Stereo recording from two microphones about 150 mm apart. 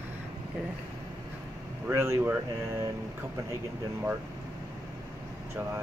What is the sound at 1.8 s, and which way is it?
Speech, 15° right (ahead or behind).